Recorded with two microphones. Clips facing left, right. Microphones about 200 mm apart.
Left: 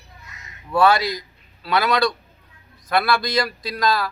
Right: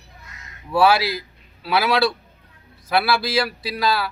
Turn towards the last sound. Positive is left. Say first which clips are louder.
# even
turn(degrees=-5)  # may be behind; listen again after turning